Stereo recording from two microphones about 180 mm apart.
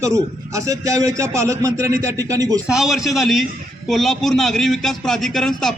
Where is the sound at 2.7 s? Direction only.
Centre (ahead or behind).